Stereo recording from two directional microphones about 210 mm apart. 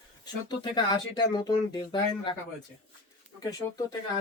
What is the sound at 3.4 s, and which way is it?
Speech, 15° left (ahead or behind).